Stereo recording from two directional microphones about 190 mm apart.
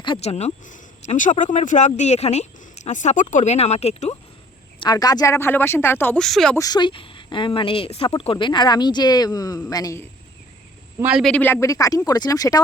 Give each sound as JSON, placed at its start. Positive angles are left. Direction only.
{"t": 0.0, "sound": "speech", "side_deg": 30}
{"t": 4.8, "sound": "speech", "side_deg": 20}
{"t": 6.6, "sound": "speech", "side_deg": 20}
{"t": 11.0, "sound": "speech", "side_deg": 0}